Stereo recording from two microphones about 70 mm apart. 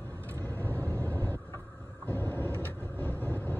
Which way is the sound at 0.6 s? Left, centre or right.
Left.